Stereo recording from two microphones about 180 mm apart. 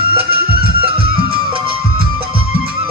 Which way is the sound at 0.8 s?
30° right (ahead or behind).